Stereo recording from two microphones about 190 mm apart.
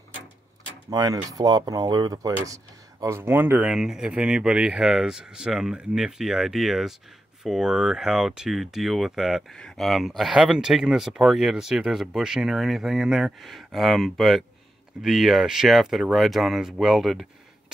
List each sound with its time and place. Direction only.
0.8 s speech: 20° right (ahead or behind); by 17.3 s centre (ahead or behind)